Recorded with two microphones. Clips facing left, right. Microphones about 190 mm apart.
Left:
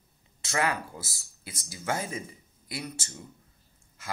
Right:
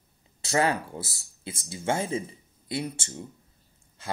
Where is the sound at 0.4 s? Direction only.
30° right (ahead or behind).